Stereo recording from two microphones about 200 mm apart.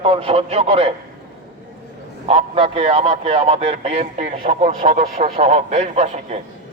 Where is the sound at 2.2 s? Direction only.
30° right (ahead or behind).